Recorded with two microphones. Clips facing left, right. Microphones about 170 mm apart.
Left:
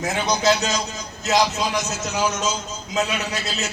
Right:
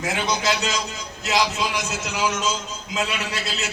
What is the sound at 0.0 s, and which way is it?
A man's voice, 40° left (ahead or behind).